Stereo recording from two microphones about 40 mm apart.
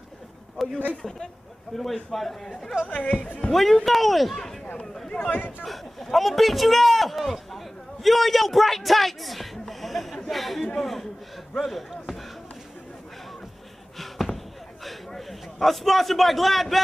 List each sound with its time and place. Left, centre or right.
0.6 s a sound: centre
1.7 s a man's voice: centre
2.9 s speech: left
3.5 s speech: centre
4.7 s a man's voice: centre
5.2 s speech: left
5.6 s speech: centre
13.9 s basketball bounce: centre
14.9 s a man's voice: centre